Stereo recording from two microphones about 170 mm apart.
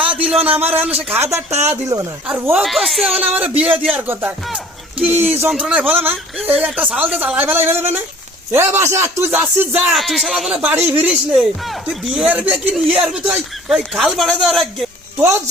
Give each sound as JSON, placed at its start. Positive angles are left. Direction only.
{"t": 0.0, "sound": "a sound", "side_deg": -10}
{"t": 0.4, "sound": "speech", "side_deg": -10}
{"t": 2.2, "sound": "speech", "side_deg": -10}